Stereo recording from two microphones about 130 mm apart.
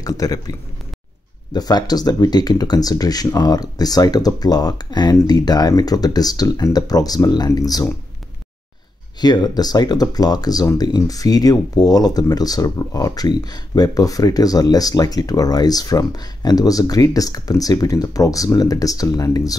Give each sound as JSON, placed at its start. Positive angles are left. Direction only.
{"t": 0.0, "sound": "speech", "side_deg": 30}
{"t": 9.2, "sound": "speech", "side_deg": 30}